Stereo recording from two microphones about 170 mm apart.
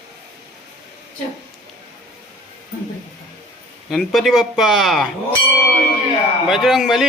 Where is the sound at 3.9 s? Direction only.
Centre (ahead or behind).